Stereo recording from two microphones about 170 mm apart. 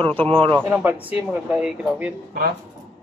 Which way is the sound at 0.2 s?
30° right (ahead or behind).